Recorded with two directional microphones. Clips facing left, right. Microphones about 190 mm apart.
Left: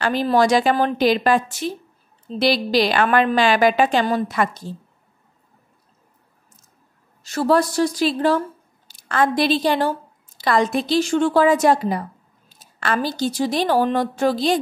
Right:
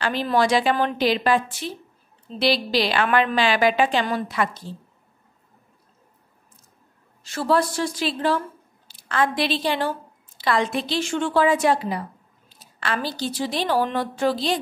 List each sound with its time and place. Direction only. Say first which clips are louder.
0.0 s a woman's voice: left 4 dB; 45° left (ahead or behind)
7.2 s a woman's voice: left 3 dB; 40° left (ahead or behind)